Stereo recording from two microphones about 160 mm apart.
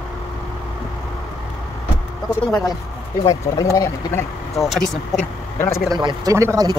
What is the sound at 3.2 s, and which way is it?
Speech, 20° left (ahead or behind).